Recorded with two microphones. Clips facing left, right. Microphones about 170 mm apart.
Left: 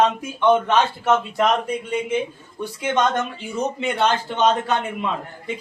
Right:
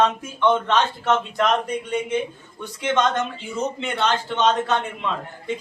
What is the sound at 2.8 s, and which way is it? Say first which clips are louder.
A man's voice: even; 10° left (ahead or behind).